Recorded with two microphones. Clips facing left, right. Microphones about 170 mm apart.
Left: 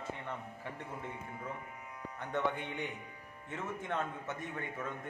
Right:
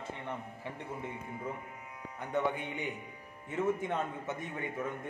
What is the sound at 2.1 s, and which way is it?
A man's voice, 10° right (ahead or behind).